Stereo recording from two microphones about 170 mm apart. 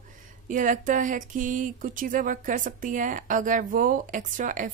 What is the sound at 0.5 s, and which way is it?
A woman's voice, 50° right (ahead or behind).